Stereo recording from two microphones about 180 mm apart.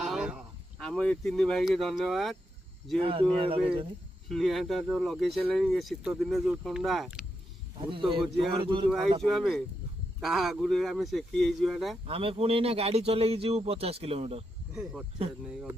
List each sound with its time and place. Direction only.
0.0 s speech: 5° right (ahead or behind)
3.0 s a man's voice: 30° right (ahead or behind)
4.3 s speech: centre (ahead or behind)
7.8 s speech: 30° right (ahead or behind)
9.2 s speech: centre (ahead or behind)
12.0 s a man's voice: 30° right (ahead or behind)
14.7 s speech: centre (ahead or behind)